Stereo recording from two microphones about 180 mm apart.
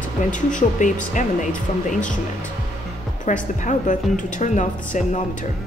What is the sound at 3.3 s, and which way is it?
Speech, 45° left (ahead or behind).